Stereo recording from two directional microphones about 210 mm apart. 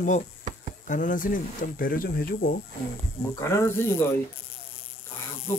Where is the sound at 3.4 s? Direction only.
15° left (ahead or behind).